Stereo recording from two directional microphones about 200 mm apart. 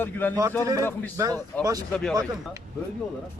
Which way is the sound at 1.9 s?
5° left (ahead or behind).